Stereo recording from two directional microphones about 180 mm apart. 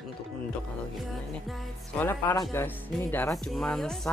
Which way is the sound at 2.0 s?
10° left (ahead or behind).